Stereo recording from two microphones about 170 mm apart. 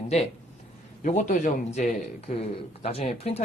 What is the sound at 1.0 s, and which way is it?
Speech, 50° left (ahead or behind).